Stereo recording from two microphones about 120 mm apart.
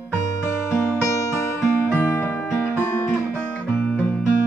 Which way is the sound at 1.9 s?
15° left (ahead or behind).